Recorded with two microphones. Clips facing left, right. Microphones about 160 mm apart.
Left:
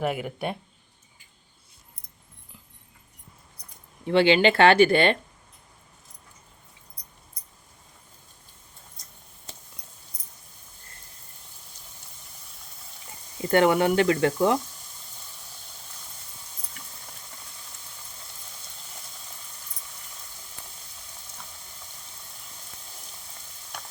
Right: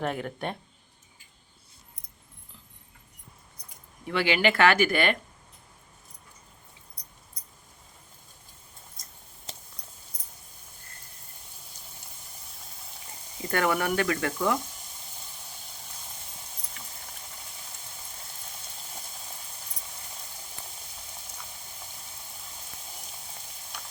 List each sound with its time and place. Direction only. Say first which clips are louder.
0.0 s speech: left 3 dB; 10° left (ahead or behind)
4.0 s speech: left 6 dB; 25° left (ahead or behind)
13.5 s speech: left 6 dB; 25° left (ahead or behind)